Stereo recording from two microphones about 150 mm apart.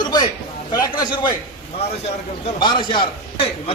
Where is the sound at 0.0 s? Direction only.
30° left (ahead or behind).